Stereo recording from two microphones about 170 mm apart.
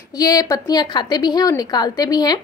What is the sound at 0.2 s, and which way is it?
A woman's voice, 20° left (ahead or behind).